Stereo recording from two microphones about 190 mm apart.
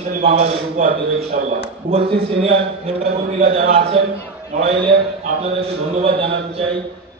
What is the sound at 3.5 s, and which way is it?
Speech, 30° right (ahead or behind).